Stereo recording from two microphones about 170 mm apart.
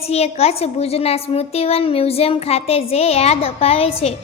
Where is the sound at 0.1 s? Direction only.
35° left (ahead or behind).